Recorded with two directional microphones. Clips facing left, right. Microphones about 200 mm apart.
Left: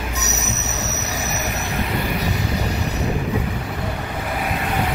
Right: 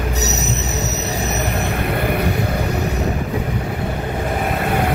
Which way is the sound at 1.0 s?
30° right (ahead or behind).